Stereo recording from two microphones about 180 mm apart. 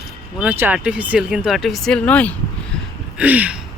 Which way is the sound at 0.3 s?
10° right (ahead or behind).